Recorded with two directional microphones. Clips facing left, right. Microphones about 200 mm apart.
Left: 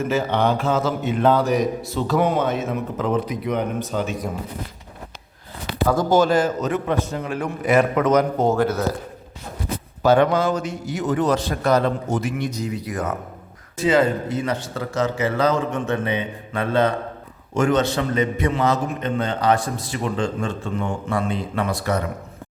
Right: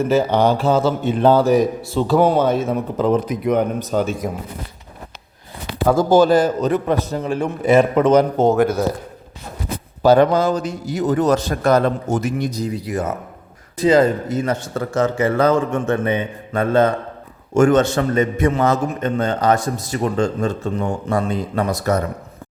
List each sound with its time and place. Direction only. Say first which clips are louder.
0.1 s a man's voice: right 4 dB; 35° right (ahead or behind)
5.9 s a man's voice: right 5 dB; 30° right (ahead or behind)
8.5 s speech: right 4 dB; 15° right (ahead or behind)
10.0 s a man's voice: right 4 dB; 35° right (ahead or behind)
13.7 s a man's voice: right 4 dB; 40° right (ahead or behind)